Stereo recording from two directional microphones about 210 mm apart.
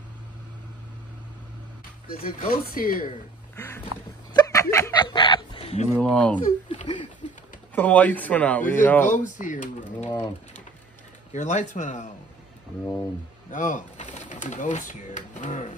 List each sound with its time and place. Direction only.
2.0 s speech: 40° left (ahead or behind)
3.5 s boat: 10° left (ahead or behind)
4.3 s snicker: 20° left (ahead or behind)
5.9 s speech: 5° left (ahead or behind)
6.7 s a sound: 25° left (ahead or behind)
7.7 s speech: 5° left (ahead or behind)
9.1 s speech: 35° left (ahead or behind)
9.9 s speech: 10° left (ahead or behind)
11.3 s speech: 35° left (ahead or behind)
13.5 s speech: 35° left (ahead or behind)